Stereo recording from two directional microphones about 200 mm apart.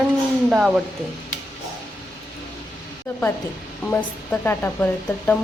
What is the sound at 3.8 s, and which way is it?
Speech, 10° left (ahead or behind).